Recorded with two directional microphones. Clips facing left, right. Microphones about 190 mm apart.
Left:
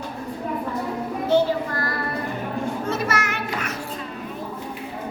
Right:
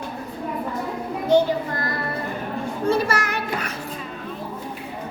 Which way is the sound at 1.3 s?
20° right (ahead or behind).